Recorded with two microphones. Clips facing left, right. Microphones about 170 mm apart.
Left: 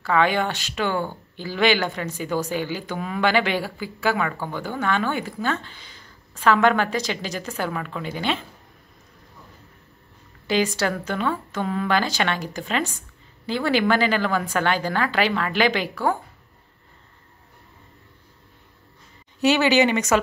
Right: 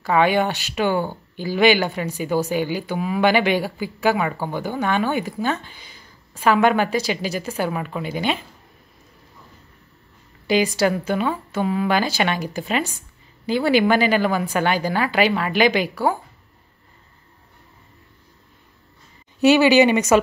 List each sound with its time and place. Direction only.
0.0 s speech: 15° right (ahead or behind)
10.4 s speech: 15° right (ahead or behind)
19.4 s speech: 15° right (ahead or behind)